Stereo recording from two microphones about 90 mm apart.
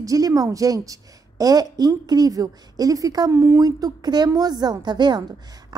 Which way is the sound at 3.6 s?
45° right (ahead or behind).